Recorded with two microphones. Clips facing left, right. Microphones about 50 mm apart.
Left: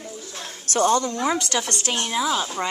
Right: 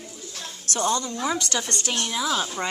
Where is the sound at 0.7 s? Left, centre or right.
Left.